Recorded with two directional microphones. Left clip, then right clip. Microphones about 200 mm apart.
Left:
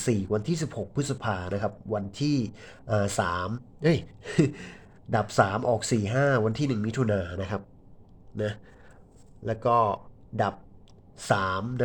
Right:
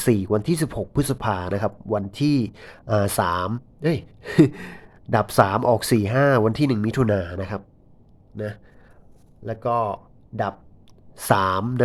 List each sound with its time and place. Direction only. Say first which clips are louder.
0.0 s speech: right 7 dB; 25° right (ahead or behind)
3.8 s speech: right 1 dB; 10° right (ahead or behind)
4.3 s speech: right 9 dB; 20° right (ahead or behind); by 10.5 s 5° right (ahead or behind)
11.2 s speech: right 6 dB; 20° right (ahead or behind)